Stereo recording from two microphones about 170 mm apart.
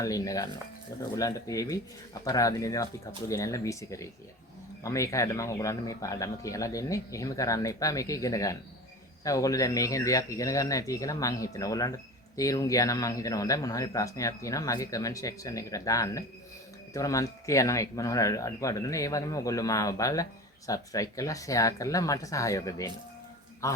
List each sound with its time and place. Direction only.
0.0 s a man's voice: 20° left (ahead or behind)